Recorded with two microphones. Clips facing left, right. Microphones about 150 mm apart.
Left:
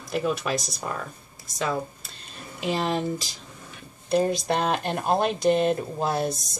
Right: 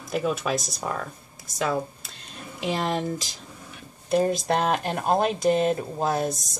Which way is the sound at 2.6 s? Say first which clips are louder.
Left 1 dB; centre (ahead or behind).